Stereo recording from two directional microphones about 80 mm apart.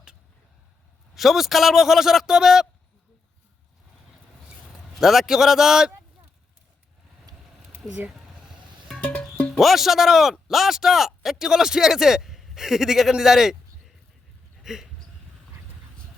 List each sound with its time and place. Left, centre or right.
1.1 s a man's voice: centre
4.9 s a man's voice: centre
9.0 s music: centre
9.6 s speech: centre
14.6 s a sound: centre